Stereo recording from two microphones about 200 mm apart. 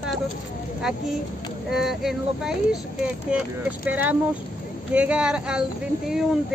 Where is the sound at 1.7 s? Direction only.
Centre (ahead or behind).